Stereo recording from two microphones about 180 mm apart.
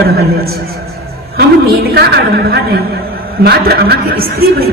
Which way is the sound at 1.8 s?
60° right (ahead or behind).